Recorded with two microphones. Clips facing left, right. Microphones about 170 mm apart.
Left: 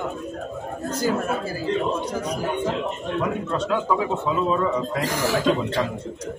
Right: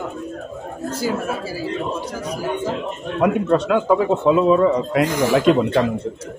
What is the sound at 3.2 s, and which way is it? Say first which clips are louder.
Speech: right 11 dB; 65° right (ahead or behind).